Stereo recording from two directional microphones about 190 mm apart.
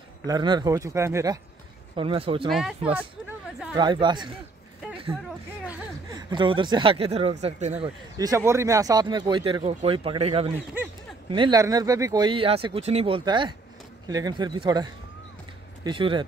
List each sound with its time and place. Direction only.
0.3 s speech: 20° right (ahead or behind)
2.0 s speech: 30° right (ahead or behind)
3.0 s speech: 5° right (ahead or behind)
3.7 s speech: 25° right (ahead or behind)
6.1 s speech: 25° right (ahead or behind)
8.2 s speech: 15° right (ahead or behind)